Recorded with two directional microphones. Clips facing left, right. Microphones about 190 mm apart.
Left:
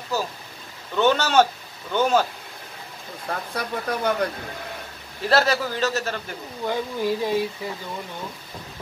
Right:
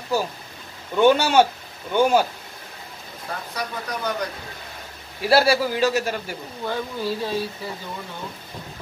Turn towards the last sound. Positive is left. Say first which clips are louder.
# left 3 dB
turn(degrees=15)  # may be behind; listen again after turning